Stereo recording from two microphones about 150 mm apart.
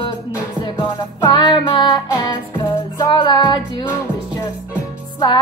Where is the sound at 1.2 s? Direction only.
30° left (ahead or behind).